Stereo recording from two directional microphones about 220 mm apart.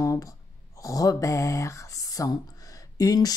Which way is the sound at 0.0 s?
15° left (ahead or behind).